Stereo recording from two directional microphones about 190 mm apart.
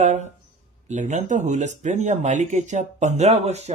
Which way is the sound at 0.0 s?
40° right (ahead or behind).